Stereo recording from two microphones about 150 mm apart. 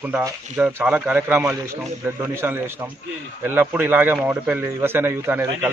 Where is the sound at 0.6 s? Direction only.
10° right (ahead or behind).